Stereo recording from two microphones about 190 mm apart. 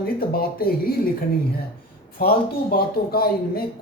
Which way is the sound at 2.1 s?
50° left (ahead or behind).